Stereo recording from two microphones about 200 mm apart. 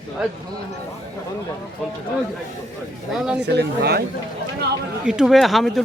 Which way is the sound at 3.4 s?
55° right (ahead or behind).